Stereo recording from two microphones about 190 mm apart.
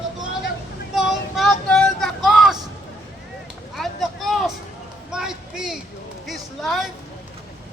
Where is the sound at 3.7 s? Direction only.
Centre (ahead or behind).